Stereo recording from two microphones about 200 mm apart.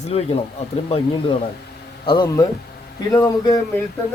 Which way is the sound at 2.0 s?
20° left (ahead or behind).